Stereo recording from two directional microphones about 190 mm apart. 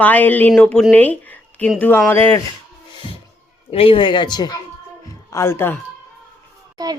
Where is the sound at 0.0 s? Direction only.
10° left (ahead or behind).